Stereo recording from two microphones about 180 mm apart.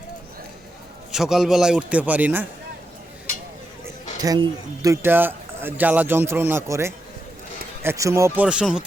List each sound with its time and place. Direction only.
1.1 s a man's voice: centre (ahead or behind)
3.8 s speech: 20° right (ahead or behind)
8.4 s a man's voice: 5° right (ahead or behind)